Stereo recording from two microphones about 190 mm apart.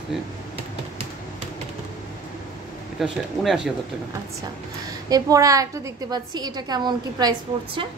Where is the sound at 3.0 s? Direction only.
Centre (ahead or behind).